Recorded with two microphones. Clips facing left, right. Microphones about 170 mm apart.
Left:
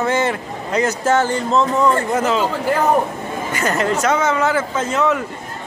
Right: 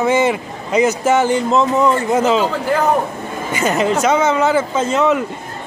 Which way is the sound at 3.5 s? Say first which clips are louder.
Right 3 dB; 20° right (ahead or behind).